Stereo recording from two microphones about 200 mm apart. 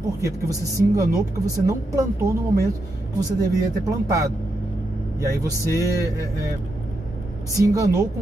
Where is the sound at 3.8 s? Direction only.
15° right (ahead or behind).